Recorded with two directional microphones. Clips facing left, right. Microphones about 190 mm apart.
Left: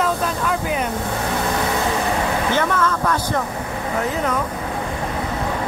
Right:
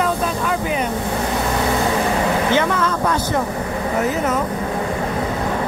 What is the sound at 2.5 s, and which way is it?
Speech, 15° right (ahead or behind).